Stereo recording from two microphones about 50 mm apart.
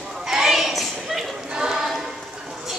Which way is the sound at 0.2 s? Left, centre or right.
Centre.